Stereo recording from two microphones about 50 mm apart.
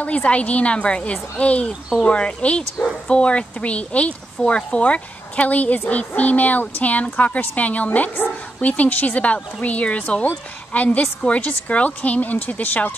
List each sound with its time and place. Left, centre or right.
0.0 s a woman's voice: left